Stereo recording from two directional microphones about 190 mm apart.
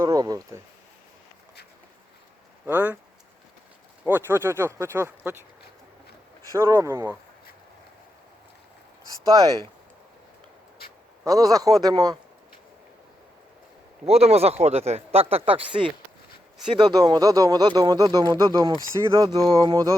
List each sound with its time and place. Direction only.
0.0 s speech: 20° right (ahead or behind)
2.6 s speech: 10° right (ahead or behind)
4.0 s speech: 10° right (ahead or behind)
6.5 s speech: 15° right (ahead or behind)
9.2 s speech: 20° right (ahead or behind)
11.2 s speech: 20° right (ahead or behind)
14.0 s speech: 35° right (ahead or behind)